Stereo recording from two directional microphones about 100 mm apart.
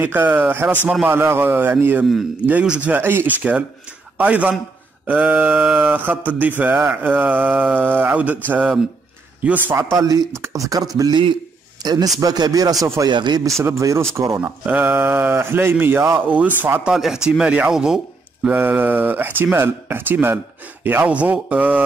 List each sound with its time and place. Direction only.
0.0 s speech: 20° right (ahead or behind)
9.9 s a man's voice: 40° right (ahead or behind)
13.1 s speech: 45° right (ahead or behind)
13.6 s speech: 30° right (ahead or behind)
16.9 s speech: 5° right (ahead or behind)
18.5 s speech: 20° right (ahead or behind)